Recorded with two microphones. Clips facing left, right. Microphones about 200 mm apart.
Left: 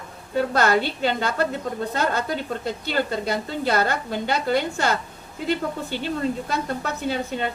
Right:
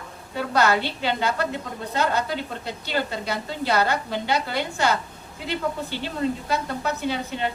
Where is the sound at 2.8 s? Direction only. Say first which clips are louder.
Left 2 dB; 50° left (ahead or behind).